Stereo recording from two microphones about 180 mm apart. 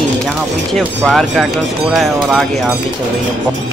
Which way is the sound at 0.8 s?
Centre (ahead or behind).